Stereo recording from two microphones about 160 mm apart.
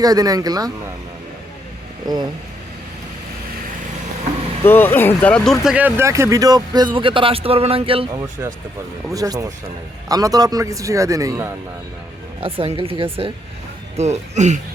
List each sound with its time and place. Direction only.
0.0 s speech: 25° right (ahead or behind)
4.6 s speech: 10° left (ahead or behind)
5.7 s speech: 15° right (ahead or behind); by 8.0 s 35° right (ahead or behind)
8.1 s speech: 15° right (ahead or behind)
12.4 s speech: 35° right (ahead or behind)